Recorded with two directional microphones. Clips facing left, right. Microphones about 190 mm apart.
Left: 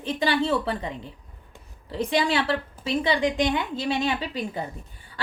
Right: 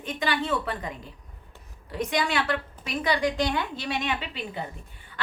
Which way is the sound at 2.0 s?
30° left (ahead or behind).